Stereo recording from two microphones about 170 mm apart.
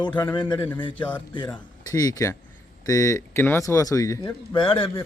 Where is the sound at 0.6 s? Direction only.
10° left (ahead or behind).